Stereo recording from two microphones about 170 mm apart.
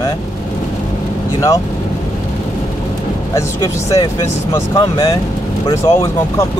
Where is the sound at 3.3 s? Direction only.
15° left (ahead or behind).